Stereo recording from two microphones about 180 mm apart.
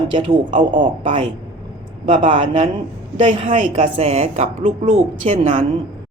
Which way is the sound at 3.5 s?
45° right (ahead or behind).